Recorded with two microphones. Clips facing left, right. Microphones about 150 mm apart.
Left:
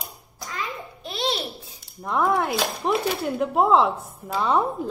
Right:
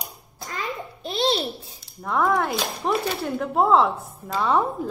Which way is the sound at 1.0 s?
30° right (ahead or behind).